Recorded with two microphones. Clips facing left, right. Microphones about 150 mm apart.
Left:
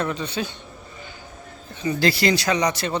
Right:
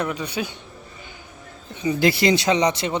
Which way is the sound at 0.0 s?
10° right (ahead or behind).